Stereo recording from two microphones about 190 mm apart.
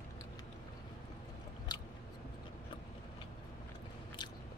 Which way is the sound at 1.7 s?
20° left (ahead or behind).